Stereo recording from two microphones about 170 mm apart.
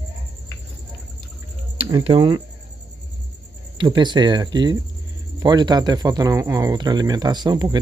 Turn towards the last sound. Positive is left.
turn(degrees=-20)  # may be behind; listen again after turning